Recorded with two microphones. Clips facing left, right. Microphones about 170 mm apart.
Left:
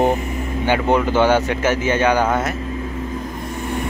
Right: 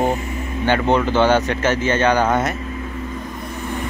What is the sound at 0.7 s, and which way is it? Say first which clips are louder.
Speech: even; 10° left (ahead or behind).